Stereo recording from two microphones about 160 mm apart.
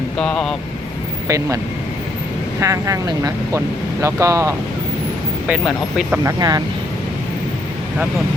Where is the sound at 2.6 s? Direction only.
20° right (ahead or behind).